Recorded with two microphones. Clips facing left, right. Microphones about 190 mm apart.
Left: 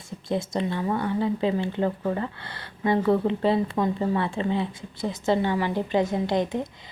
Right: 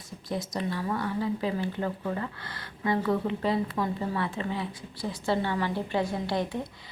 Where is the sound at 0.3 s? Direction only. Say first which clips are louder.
Left 5 dB; 25° left (ahead or behind).